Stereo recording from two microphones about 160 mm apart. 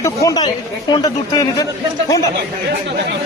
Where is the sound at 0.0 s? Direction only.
20° left (ahead or behind).